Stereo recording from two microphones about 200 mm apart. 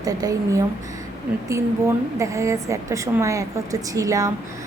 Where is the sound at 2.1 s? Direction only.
15° right (ahead or behind).